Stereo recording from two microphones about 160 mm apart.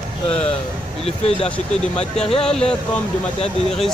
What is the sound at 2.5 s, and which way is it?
Speech, 5° left (ahead or behind).